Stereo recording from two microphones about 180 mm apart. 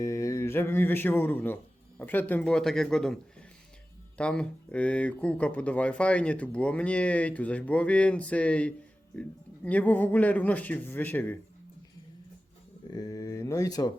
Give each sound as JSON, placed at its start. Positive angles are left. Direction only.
{"t": 0.0, "sound": "mantra", "side_deg": 15}
{"t": 2.0, "sound": "a man's voice", "side_deg": 10}
{"t": 4.2, "sound": "speech", "side_deg": 5}
{"t": 12.9, "sound": "speech", "side_deg": 20}